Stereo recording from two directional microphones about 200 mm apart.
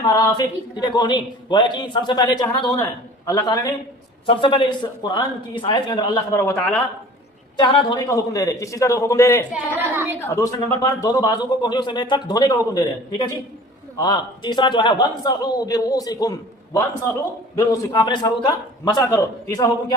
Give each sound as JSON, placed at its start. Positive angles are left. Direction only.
{"t": 0.0, "sound": "a man's voice", "side_deg": 20}
{"t": 7.6, "sound": "a man's voice", "side_deg": 20}
{"t": 9.5, "sound": "speech", "side_deg": -10}
{"t": 10.2, "sound": "a man's voice", "side_deg": 15}